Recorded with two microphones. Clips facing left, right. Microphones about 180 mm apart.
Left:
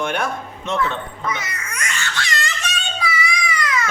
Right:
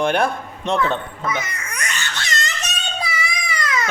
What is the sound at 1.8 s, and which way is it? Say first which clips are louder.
Baby cry: left 2 dB; 20° right (ahead or behind).